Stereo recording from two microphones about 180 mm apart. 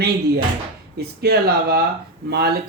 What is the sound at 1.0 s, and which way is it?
Speech, 60° right (ahead or behind).